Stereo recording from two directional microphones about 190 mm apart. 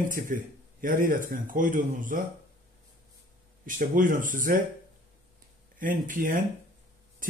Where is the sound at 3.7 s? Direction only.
45° right (ahead or behind).